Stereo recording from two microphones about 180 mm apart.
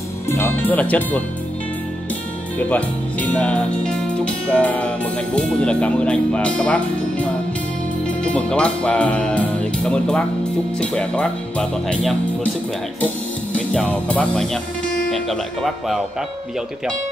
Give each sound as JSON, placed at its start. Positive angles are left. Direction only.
{"t": 0.3, "sound": "speech", "side_deg": 10}
{"t": 2.7, "sound": "speech", "side_deg": 10}
{"t": 8.1, "sound": "music", "side_deg": 5}
{"t": 10.8, "sound": "speech", "side_deg": 5}
{"t": 13.0, "sound": "music", "side_deg": 5}
{"t": 15.0, "sound": "speech", "side_deg": 0}